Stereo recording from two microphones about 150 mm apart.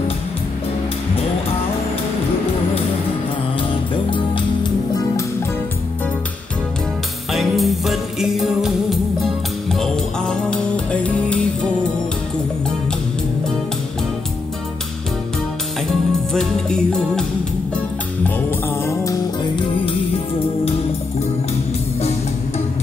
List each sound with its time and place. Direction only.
3.9 s music: 35° left (ahead or behind)
7.3 s jingle bell: centre (ahead or behind)
16.3 s music: 5° left (ahead or behind)
19.5 s music: 35° left (ahead or behind)